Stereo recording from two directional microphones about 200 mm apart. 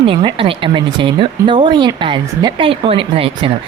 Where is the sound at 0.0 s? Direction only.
25° right (ahead or behind).